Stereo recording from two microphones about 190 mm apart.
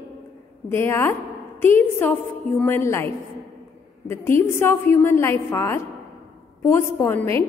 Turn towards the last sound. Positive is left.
turn(degrees=15)  # may be behind; listen again after turning